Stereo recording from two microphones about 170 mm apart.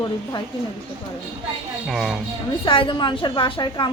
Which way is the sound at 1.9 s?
Centre (ahead or behind).